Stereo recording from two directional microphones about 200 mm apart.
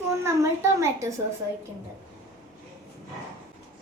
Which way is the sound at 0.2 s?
15° right (ahead or behind).